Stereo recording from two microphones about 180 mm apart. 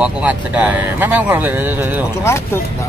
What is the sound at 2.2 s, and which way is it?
Speech, 15° left (ahead or behind).